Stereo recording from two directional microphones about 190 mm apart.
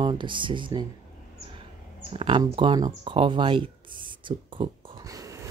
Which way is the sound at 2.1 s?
25° right (ahead or behind).